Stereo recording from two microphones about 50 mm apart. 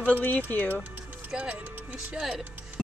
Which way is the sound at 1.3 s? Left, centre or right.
Right.